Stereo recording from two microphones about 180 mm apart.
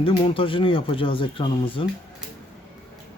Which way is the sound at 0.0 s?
30° left (ahead or behind).